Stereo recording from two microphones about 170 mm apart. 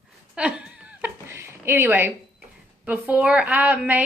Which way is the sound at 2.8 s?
5° right (ahead or behind).